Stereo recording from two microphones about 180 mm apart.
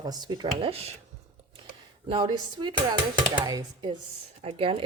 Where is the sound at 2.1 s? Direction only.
25° right (ahead or behind).